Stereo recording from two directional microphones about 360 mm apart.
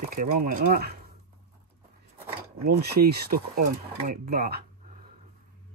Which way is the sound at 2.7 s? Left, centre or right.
Right.